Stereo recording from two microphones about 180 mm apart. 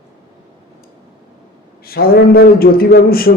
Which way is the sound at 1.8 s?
55° left (ahead or behind).